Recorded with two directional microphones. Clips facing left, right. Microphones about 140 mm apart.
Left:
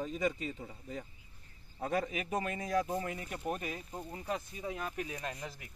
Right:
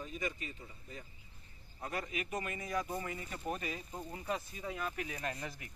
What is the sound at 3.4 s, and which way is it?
Speech, 5° left (ahead or behind).